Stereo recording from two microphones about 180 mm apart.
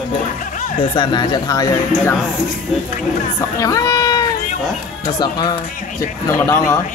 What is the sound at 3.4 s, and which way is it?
Speech, 20° left (ahead or behind).